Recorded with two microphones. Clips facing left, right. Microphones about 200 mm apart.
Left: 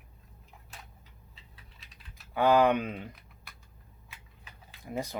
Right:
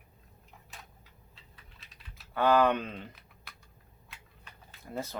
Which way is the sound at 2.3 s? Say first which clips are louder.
Left 2 dB; 15° left (ahead or behind).